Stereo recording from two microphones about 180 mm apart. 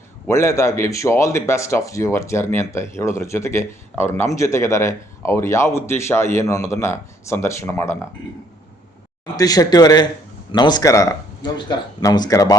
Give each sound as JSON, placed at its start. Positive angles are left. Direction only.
{"t": 0.3, "sound": "speech", "side_deg": 15}
{"t": 9.3, "sound": "speech", "side_deg": 20}